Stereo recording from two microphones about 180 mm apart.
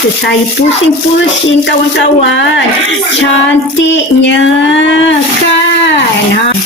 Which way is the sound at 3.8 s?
90° left.